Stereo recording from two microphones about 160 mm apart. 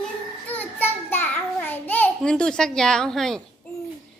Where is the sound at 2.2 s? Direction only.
5° left (ahead or behind).